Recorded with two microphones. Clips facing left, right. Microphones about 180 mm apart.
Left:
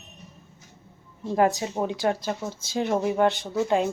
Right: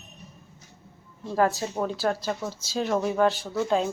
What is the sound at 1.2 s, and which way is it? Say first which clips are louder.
A woman's voice: left 2 dB; 20° left (ahead or behind).